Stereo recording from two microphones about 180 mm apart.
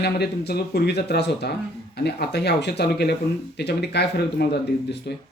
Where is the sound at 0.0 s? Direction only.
65° left (ahead or behind).